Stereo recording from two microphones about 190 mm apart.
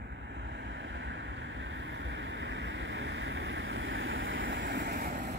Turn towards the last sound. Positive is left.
turn(degrees=-50)  # may be behind; listen again after turning